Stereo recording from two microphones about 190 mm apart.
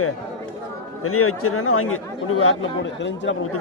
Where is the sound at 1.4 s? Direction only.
90° left.